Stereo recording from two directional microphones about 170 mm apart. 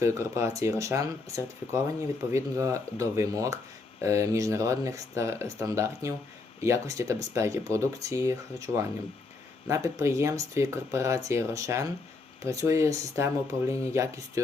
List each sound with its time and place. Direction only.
0.0 s speech: 15° right (ahead or behind)